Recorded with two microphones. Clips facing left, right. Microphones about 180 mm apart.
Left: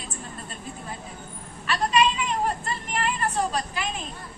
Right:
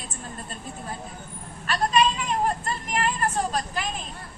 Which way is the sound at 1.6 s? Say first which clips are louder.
Even; 40° right (ahead or behind).